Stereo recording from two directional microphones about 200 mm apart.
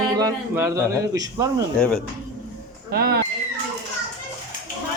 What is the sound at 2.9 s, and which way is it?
Speech, 50° right (ahead or behind).